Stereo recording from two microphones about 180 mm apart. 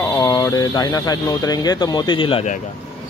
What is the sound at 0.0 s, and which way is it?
Speech, 15° left (ahead or behind).